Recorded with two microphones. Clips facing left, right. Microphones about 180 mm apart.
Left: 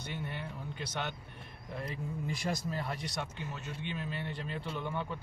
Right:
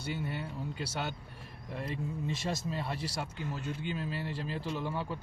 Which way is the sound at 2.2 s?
25° right (ahead or behind).